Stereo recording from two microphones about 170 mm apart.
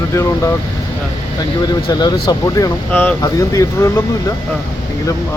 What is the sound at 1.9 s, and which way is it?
Speech, 25° left (ahead or behind).